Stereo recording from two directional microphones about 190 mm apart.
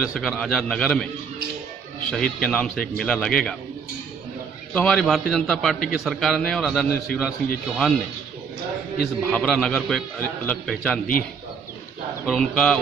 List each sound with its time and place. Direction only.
0.1 s a man's voice: centre (ahead or behind)
2.0 s a man's voice: 5° left (ahead or behind)
4.7 s a man's voice: 5° left (ahead or behind)
9.3 s a man's voice: centre (ahead or behind)
12.3 s a man's voice: centre (ahead or behind)